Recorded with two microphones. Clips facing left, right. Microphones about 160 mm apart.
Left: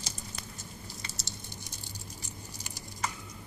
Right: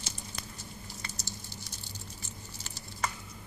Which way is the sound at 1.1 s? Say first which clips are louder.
Right 1 dB; 75° left (ahead or behind).